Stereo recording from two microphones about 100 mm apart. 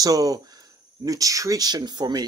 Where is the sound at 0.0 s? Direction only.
35° right (ahead or behind).